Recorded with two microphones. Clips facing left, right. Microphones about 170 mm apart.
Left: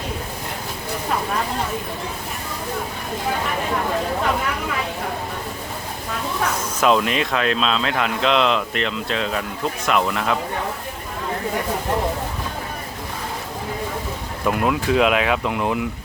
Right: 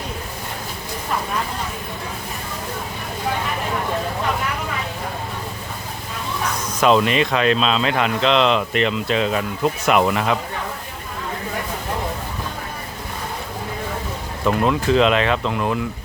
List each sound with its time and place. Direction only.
6.7 s speech: centre (ahead or behind)
14.4 s speech: 5° left (ahead or behind)
15.5 s speech: 20° left (ahead or behind)